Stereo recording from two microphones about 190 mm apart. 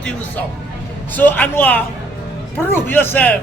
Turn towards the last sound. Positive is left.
turn(degrees=10)  # may be behind; listen again after turning